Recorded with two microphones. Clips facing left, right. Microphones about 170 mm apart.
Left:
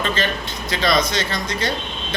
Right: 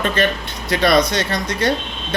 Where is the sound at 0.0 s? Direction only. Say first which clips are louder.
Right 4 dB; 55° right (ahead or behind).